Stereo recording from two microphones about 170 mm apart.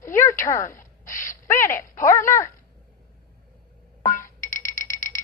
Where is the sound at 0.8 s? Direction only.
50° left (ahead or behind).